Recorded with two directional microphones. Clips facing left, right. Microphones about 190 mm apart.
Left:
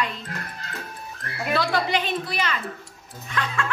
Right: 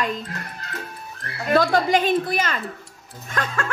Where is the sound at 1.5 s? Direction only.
45° right (ahead or behind).